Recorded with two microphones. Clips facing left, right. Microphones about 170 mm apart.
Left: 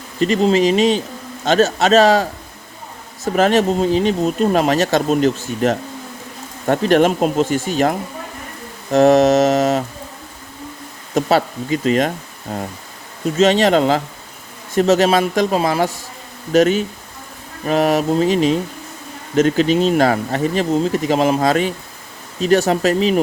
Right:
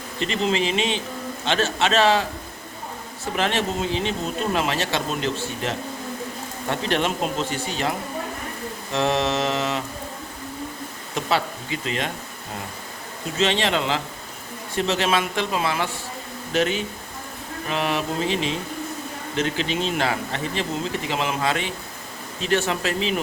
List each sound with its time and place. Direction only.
0.2 s a man's voice: 40° left (ahead or behind)
3.3 s a man's voice: 40° left (ahead or behind)
11.1 s speech: 45° left (ahead or behind)
13.4 s a man's voice: 40° left (ahead or behind)